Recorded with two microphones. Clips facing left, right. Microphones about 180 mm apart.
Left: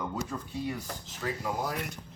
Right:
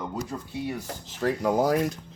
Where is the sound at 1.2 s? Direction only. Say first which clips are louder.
Right 10 dB; 85° right.